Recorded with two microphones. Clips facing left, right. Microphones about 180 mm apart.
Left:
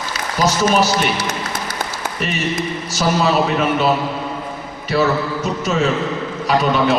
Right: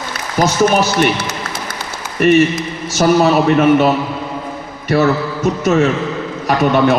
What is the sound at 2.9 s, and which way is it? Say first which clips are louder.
Speech: right 5 dB; 50° right (ahead or behind).